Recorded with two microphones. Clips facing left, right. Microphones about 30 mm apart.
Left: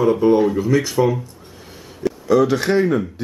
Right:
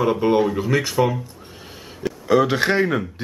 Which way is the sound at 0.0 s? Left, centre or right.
Right.